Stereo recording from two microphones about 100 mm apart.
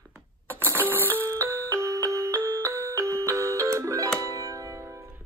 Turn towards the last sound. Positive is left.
turn(degrees=-30)  # may be behind; listen again after turning